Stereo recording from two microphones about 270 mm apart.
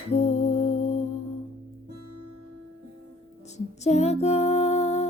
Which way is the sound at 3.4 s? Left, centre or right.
Left.